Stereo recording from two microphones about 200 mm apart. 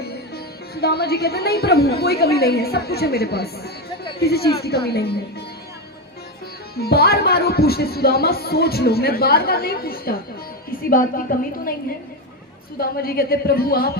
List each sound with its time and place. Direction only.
0.0 s speech: 50° left (ahead or behind)
6.7 s speech: 50° left (ahead or behind)